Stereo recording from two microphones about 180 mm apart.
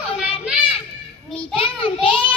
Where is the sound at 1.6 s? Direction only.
30° left (ahead or behind).